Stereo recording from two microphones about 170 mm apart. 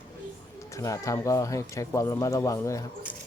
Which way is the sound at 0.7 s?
20° left (ahead or behind).